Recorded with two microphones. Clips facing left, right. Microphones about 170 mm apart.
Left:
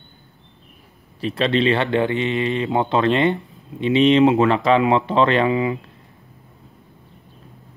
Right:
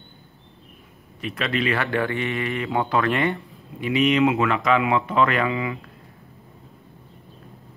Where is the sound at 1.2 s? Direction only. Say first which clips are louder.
Left 6 dB; 30° left (ahead or behind).